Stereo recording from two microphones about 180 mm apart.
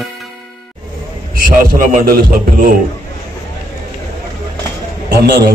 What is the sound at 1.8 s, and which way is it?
Speech, 50° right (ahead or behind).